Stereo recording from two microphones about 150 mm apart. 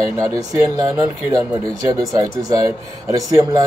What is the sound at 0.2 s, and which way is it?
Speech, 25° right (ahead or behind).